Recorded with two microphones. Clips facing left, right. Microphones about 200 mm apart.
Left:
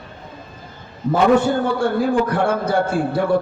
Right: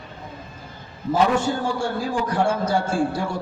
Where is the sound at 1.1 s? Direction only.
60° left (ahead or behind).